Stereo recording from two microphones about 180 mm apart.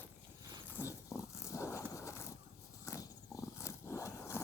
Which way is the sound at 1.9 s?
15° left (ahead or behind).